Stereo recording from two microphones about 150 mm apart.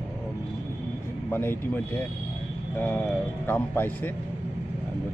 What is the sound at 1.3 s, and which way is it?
Speech, 15° left (ahead or behind).